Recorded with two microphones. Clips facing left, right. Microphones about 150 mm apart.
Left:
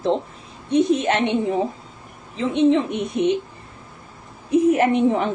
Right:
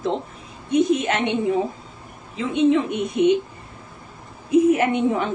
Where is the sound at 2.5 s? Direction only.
35° left (ahead or behind).